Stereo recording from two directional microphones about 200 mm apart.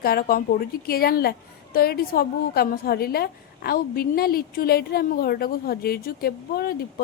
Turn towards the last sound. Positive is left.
turn(degrees=50)  # may be behind; listen again after turning